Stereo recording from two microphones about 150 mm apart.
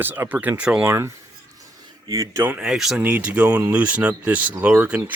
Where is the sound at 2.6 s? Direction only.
Centre (ahead or behind).